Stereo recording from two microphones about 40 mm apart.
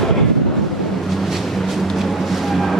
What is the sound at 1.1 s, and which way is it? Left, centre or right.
Vehicle, centre.